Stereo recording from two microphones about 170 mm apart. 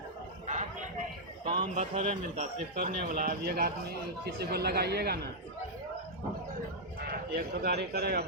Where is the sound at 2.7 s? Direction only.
60° right (ahead or behind).